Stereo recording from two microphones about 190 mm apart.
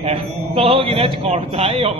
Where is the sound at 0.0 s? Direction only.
30° right (ahead or behind).